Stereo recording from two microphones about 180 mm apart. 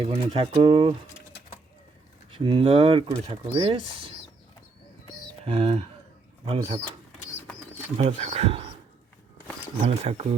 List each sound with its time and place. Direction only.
0.1 s speech: 30° right (ahead or behind)
2.3 s speech: 30° right (ahead or behind)
5.5 s speech: 30° right (ahead or behind)
7.9 s speech: 40° right (ahead or behind)
9.8 s speech: 35° right (ahead or behind)